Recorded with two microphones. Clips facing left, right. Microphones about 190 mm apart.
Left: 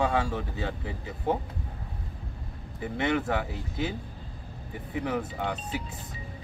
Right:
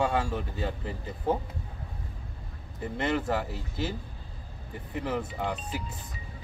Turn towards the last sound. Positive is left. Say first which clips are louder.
# left 1 dB
turn(degrees=0)  # may be behind; listen again after turning